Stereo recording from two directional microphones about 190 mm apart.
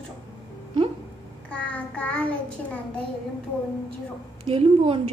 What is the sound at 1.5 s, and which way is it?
Child singing, 5° left (ahead or behind).